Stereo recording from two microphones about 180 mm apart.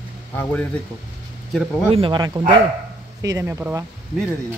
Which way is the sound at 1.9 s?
30° right (ahead or behind).